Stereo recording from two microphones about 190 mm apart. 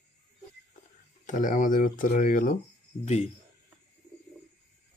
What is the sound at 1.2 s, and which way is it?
Speech, 40° left (ahead or behind).